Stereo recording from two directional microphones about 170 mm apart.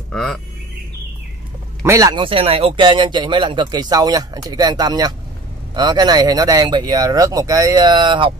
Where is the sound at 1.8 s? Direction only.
20° right (ahead or behind).